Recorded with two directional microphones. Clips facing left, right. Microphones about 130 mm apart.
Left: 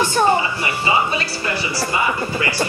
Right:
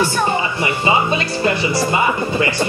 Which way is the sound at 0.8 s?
20° right (ahead or behind).